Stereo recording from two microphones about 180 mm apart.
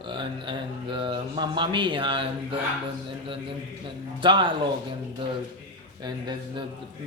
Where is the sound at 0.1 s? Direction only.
25° right (ahead or behind).